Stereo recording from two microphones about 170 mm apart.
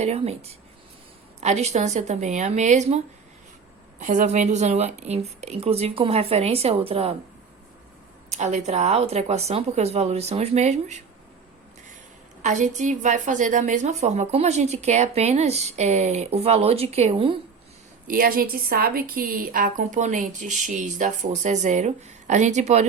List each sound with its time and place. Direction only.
0.0 s a woman's voice: 40° right (ahead or behind)
4.0 s a woman's voice: 50° right (ahead or behind)
8.3 s a woman's voice: 45° right (ahead or behind)
12.4 s a woman's voice: 45° right (ahead or behind)
18.1 s a woman's voice: 60° right (ahead or behind); by 22.9 s 40° right (ahead or behind)